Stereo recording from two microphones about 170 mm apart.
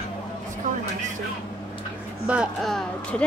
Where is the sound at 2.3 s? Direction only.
Centre (ahead or behind).